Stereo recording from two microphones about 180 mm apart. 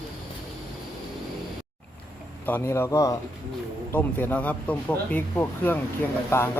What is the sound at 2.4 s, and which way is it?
Speech, 10° left (ahead or behind).